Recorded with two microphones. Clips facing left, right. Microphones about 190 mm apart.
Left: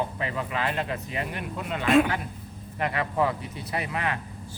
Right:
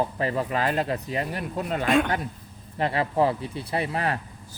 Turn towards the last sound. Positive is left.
turn(degrees=-35)  # may be behind; listen again after turning